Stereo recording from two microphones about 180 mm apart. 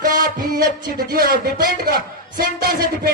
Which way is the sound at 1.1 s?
55° right (ahead or behind).